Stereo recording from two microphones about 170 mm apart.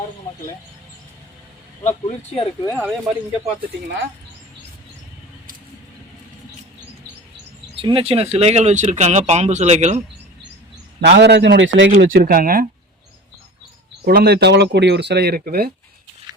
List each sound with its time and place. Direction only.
1.8 s speech: 40° left (ahead or behind)
2.6 s speech: 10° left (ahead or behind)
7.8 s speech: 30° right (ahead or behind)
11.0 s a man's voice: 80° right
11.9 s speech: 60° right (ahead or behind)
14.0 s speech: 60° right (ahead or behind)